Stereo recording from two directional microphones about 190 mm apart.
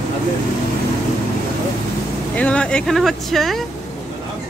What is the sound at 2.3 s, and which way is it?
Speech, 5° left (ahead or behind).